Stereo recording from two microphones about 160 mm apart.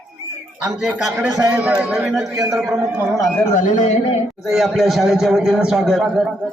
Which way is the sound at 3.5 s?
50° left (ahead or behind).